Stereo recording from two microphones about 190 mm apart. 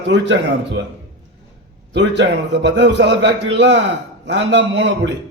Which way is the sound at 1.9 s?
65° right (ahead or behind).